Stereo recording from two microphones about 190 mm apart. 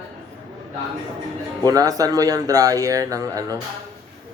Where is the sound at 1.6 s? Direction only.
20° right (ahead or behind).